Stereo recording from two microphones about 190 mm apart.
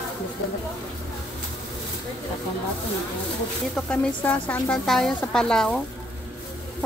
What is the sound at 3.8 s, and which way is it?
Speech, 5° left (ahead or behind).